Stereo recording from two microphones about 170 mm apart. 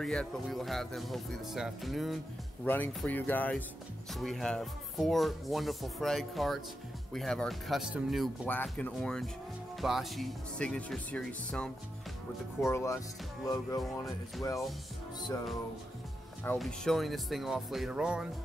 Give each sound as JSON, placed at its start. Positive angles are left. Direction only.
{"t": 0.0, "sound": "speech", "side_deg": 5}
{"t": 2.6, "sound": "speech", "side_deg": 10}
{"t": 12.6, "sound": "speech", "side_deg": 15}
{"t": 13.5, "sound": "music", "side_deg": 20}
{"t": 16.5, "sound": "speech", "side_deg": 0}